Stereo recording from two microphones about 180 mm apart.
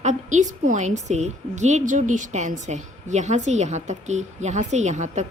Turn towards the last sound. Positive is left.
turn(degrees=-40)  # may be behind; listen again after turning